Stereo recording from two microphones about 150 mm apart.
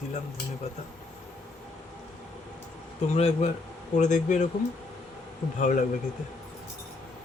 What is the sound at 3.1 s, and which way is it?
Speech, 45° left (ahead or behind).